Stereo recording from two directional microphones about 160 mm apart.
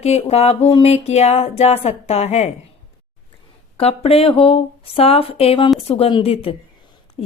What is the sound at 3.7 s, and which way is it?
Speech, 40° left (ahead or behind).